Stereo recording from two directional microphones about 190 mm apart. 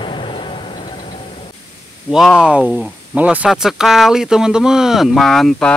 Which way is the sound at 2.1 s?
5° right (ahead or behind).